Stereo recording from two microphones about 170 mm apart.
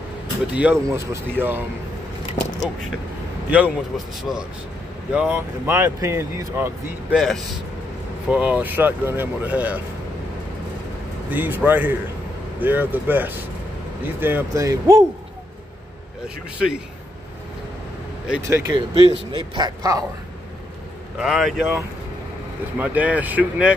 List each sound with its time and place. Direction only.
0.8 s speech: 15° right (ahead or behind)
3.4 s a man's voice: 10° right (ahead or behind)
5.7 s speech: 15° right (ahead or behind)
8.3 s speech: 5° right (ahead or behind)
11.2 s a man's voice: 10° right (ahead or behind)
16.5 s speech: 5° right (ahead or behind)
18.4 s a man's voice: 20° right (ahead or behind)
21.2 s a man's voice: centre (ahead or behind)
22.8 s speech: 10° right (ahead or behind)